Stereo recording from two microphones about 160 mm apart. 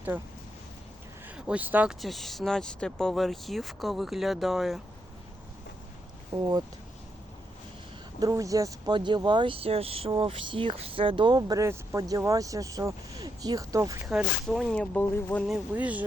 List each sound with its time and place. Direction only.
1.4 s speech: 5° right (ahead or behind)
6.3 s speech: 25° right (ahead or behind)
8.2 s speech: 20° right (ahead or behind)
14.0 s speech: 5° right (ahead or behind); by 15.4 s 10° left (ahead or behind)
15.4 s speech: 5° right (ahead or behind)